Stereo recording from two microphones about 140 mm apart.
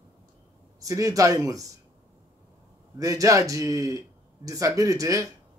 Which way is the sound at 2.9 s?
25° right (ahead or behind).